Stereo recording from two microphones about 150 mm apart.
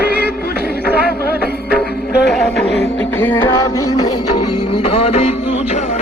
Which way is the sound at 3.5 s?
25° left (ahead or behind).